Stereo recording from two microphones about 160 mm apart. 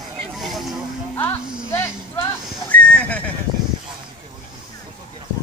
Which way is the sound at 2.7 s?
10° left (ahead or behind).